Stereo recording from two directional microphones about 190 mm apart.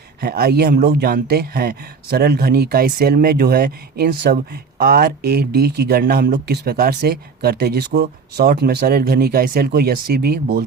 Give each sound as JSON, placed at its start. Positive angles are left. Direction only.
{"t": 0.2, "sound": "speech", "side_deg": -55}